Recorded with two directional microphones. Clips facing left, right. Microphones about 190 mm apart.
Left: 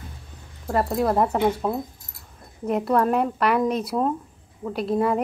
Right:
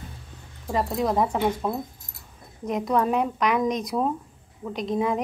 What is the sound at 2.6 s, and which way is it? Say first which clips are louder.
Speech: left 3 dB; 5° left (ahead or behind).